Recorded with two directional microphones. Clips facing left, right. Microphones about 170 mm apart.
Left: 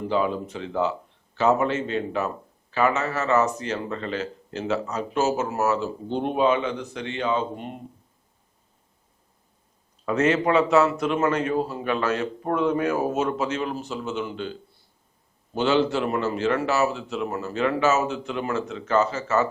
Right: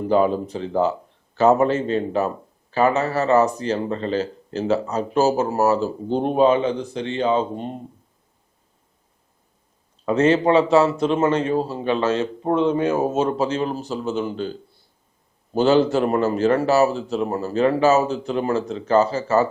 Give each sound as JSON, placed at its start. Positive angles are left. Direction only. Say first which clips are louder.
{"t": 0.1, "sound": "a man's voice", "louder": "right 7 dB", "side_deg": -40}
{"t": 10.1, "sound": "a man's voice", "louder": "right 4 dB", "side_deg": -30}